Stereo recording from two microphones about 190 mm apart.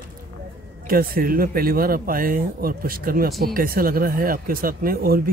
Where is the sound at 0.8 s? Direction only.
50° right (ahead or behind).